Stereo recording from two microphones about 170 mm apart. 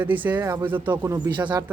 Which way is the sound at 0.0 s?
10° right (ahead or behind).